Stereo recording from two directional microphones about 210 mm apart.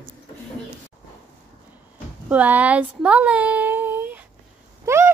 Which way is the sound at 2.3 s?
5° right (ahead or behind).